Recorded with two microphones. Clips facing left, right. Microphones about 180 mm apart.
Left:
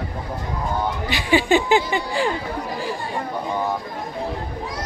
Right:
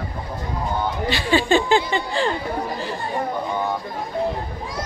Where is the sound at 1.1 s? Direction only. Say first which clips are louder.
Left 1 dB; 15° left (ahead or behind).